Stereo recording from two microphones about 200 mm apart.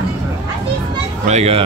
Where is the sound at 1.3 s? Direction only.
30° right (ahead or behind).